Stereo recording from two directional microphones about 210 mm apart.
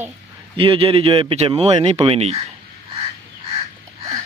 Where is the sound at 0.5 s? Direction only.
25° right (ahead or behind).